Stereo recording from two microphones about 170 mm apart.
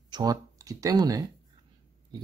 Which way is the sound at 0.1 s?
20° right (ahead or behind).